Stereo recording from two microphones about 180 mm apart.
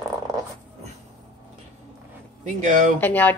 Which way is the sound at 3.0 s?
10° left (ahead or behind).